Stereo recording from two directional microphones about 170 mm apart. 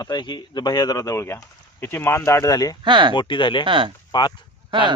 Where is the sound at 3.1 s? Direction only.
30° left (ahead or behind).